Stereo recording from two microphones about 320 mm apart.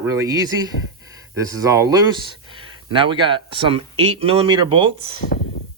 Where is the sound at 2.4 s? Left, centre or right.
Centre.